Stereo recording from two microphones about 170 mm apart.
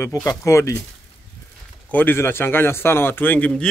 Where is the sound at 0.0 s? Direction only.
20° left (ahead or behind).